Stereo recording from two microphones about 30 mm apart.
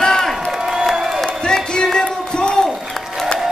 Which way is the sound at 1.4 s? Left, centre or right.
Left.